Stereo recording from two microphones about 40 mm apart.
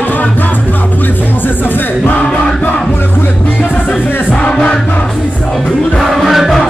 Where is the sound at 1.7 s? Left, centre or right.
Left.